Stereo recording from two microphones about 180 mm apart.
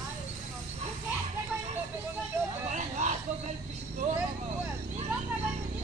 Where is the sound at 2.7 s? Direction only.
40° right (ahead or behind).